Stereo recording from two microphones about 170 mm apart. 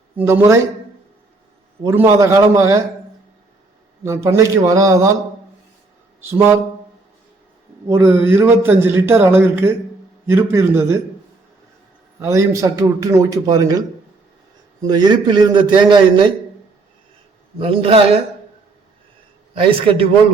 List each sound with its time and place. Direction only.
0.2 s a man's voice: 15° right (ahead or behind)
1.8 s a man's voice: 15° right (ahead or behind)
4.0 s a man's voice: 15° right (ahead or behind)
6.3 s a man's voice: 15° right (ahead or behind)
7.9 s a man's voice: 15° right (ahead or behind)
12.2 s a man's voice: 20° right (ahead or behind)
17.6 s a man's voice: 35° right (ahead or behind)
19.5 s a man's voice: 30° right (ahead or behind)